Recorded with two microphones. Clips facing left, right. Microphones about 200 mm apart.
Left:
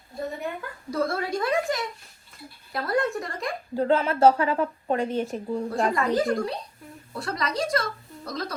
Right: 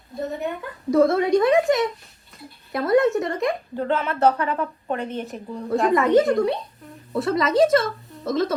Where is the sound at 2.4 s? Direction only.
Centre (ahead or behind).